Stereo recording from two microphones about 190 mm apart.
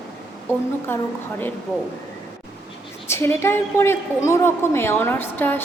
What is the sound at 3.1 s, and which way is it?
A woman's voice, 10° left (ahead or behind).